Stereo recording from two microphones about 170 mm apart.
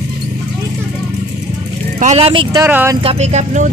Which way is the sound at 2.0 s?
35° right (ahead or behind).